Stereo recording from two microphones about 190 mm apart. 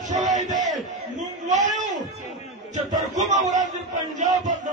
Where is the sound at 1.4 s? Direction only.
40° right (ahead or behind).